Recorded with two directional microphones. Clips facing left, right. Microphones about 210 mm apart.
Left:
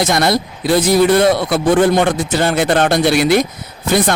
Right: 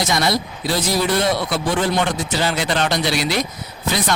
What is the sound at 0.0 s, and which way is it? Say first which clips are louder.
Speech: left 5 dB; 55° left (ahead or behind).